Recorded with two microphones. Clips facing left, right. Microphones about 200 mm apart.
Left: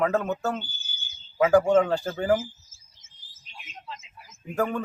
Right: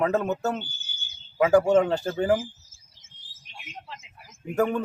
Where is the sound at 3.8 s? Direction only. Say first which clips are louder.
Left 2 dB; 70° right (ahead or behind).